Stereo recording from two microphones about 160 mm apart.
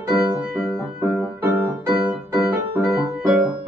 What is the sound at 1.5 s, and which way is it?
Keyboard, 15° right (ahead or behind).